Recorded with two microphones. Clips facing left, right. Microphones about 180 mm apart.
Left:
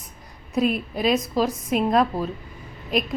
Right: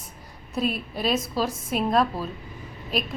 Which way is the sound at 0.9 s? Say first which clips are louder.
Left 3 dB; centre (ahead or behind).